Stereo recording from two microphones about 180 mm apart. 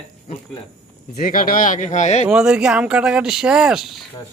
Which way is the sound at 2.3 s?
5° right (ahead or behind).